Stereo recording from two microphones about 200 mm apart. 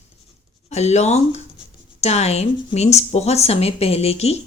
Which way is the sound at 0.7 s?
35° left (ahead or behind).